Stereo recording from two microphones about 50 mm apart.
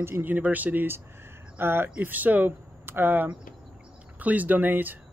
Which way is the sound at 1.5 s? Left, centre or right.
Right.